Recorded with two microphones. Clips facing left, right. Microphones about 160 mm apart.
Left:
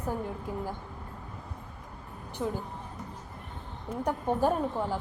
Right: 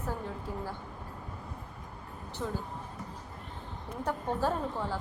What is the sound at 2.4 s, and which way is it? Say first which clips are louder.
Speech: left 4 dB; 10° left (ahead or behind).